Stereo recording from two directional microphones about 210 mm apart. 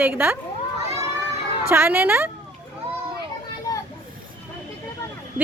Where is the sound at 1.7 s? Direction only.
10° right (ahead or behind).